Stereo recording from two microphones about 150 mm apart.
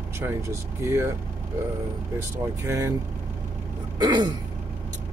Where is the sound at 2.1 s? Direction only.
20° right (ahead or behind).